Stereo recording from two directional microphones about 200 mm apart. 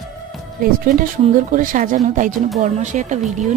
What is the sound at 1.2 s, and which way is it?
Speech, 40° right (ahead or behind).